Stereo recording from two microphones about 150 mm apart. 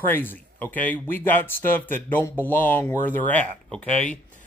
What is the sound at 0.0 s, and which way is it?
Speech, 15° left (ahead or behind).